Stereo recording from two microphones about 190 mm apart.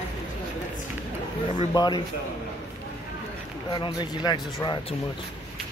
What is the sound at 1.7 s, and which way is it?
Speech, 20° left (ahead or behind).